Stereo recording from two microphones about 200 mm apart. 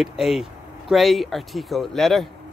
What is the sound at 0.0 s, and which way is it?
Speech, centre (ahead or behind).